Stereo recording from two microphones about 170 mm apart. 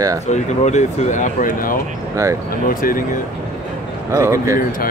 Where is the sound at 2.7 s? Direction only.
55° left (ahead or behind).